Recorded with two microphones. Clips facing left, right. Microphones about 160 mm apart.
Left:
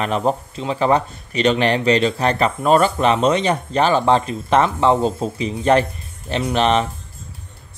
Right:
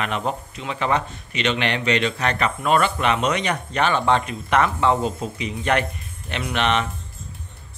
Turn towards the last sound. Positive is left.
turn(degrees=35)  # may be behind; listen again after turning